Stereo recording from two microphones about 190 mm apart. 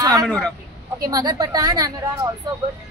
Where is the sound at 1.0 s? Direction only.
20° right (ahead or behind).